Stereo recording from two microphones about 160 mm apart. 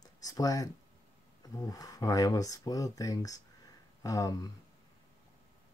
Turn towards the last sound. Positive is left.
turn(degrees=20)  # may be behind; listen again after turning